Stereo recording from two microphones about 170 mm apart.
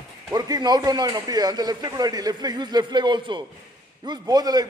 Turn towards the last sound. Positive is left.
turn(degrees=-20)  # may be behind; listen again after turning